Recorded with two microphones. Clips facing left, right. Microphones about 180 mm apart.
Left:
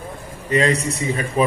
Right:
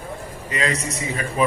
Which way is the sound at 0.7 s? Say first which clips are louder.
Left 5 dB; 60° left (ahead or behind).